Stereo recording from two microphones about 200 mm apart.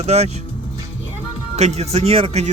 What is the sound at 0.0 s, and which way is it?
Speech, 35° right (ahead or behind).